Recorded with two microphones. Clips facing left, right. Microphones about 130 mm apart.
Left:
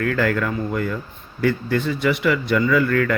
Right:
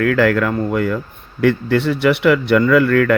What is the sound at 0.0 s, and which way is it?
Speech, 75° right (ahead or behind).